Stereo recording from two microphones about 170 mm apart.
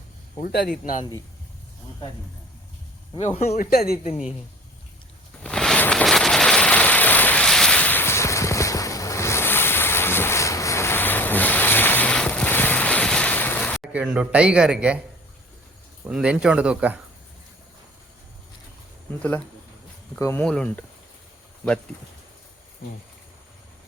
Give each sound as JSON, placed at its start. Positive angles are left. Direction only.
{"t": 0.4, "sound": "speech", "side_deg": 65}
{"t": 3.2, "sound": "speech", "side_deg": 40}
{"t": 3.6, "sound": "speech", "side_deg": 65}
{"t": 5.4, "sound": "vehicle", "side_deg": 5}
{"t": 13.9, "sound": "a man's voice", "side_deg": -5}
{"t": 16.0, "sound": "speech", "side_deg": -5}
{"t": 19.1, "sound": "speech", "side_deg": 10}